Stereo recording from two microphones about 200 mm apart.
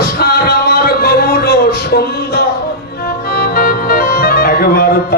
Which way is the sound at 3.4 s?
50° left (ahead or behind).